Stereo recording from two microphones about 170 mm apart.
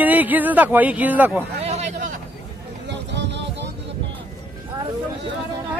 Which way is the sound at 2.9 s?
90° right.